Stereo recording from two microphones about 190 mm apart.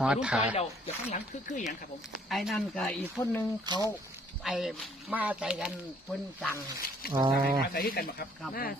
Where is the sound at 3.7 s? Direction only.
20° right (ahead or behind).